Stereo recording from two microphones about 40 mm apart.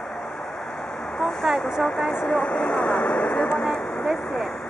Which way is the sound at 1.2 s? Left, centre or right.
Centre.